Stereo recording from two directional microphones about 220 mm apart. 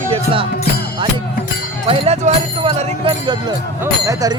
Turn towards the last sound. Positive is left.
turn(degrees=-15)  # may be behind; listen again after turning